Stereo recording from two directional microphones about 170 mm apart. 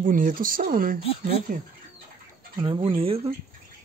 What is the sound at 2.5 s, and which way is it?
Speech, 30° right (ahead or behind).